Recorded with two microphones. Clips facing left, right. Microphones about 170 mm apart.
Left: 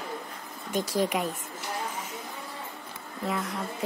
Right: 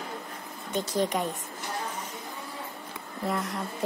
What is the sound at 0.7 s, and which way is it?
Speech, 5° left (ahead or behind).